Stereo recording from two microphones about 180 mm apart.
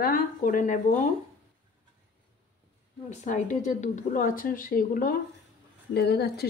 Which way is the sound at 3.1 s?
45° left (ahead or behind).